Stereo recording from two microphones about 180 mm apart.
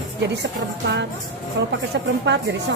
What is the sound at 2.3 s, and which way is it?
Speech, 75° right (ahead or behind).